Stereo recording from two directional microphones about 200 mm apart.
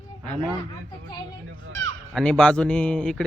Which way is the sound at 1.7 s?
70° right (ahead or behind).